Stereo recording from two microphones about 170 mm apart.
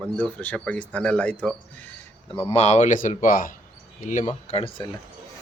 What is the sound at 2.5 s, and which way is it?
Speech, 40° left (ahead or behind).